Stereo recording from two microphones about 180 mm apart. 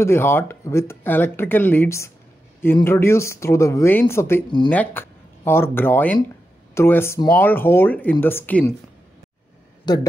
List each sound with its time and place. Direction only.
0.0 s speech: 15° left (ahead or behind)
9.9 s speech: 25° left (ahead or behind)